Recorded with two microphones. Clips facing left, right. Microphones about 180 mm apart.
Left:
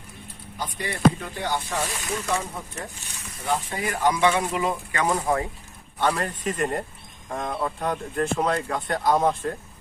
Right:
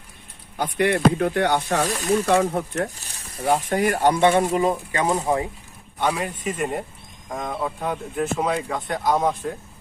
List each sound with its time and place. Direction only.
0.6 s speech: 65° right (ahead or behind)
3.0 s a sound: 35° right (ahead or behind)
3.4 s speech: 50° right (ahead or behind)
4.9 s speech: 20° right (ahead or behind)
6.0 s a man's voice: 10° right (ahead or behind)